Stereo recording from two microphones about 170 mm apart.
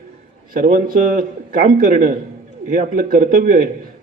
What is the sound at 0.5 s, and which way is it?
A man's voice, 55° right (ahead or behind).